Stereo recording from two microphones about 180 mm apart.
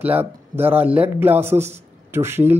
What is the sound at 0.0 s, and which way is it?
Speech, 10° right (ahead or behind).